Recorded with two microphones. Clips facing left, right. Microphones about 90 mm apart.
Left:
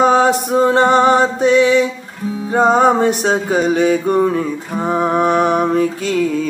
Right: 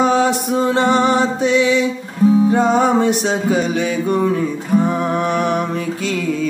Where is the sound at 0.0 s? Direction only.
40° left (ahead or behind).